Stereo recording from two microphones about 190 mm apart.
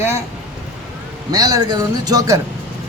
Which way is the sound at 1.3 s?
20° right (ahead or behind).